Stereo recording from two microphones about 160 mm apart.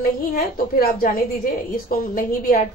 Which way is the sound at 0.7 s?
60° left (ahead or behind).